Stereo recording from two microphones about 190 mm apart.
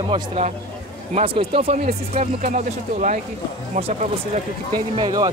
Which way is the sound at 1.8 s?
40° right (ahead or behind).